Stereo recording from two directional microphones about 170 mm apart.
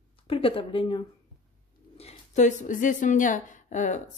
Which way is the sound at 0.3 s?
30° left (ahead or behind).